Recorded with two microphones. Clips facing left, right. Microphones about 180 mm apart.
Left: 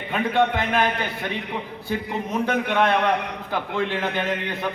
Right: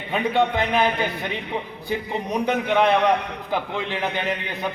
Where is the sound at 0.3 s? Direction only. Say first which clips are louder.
Even; 20° right (ahead or behind).